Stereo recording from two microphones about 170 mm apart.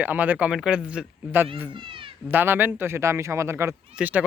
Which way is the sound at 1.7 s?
30° right (ahead or behind).